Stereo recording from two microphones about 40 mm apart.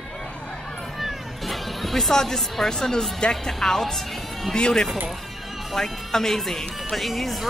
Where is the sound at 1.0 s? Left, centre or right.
Centre.